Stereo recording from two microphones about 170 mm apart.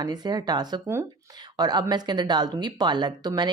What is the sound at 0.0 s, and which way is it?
Speech, 25° right (ahead or behind).